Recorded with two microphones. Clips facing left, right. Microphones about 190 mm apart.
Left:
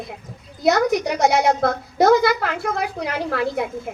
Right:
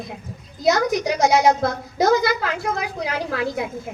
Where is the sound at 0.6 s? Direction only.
60° left (ahead or behind).